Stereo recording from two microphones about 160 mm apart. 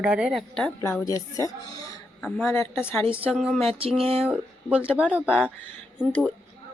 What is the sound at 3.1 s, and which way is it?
Speech, 5° right (ahead or behind).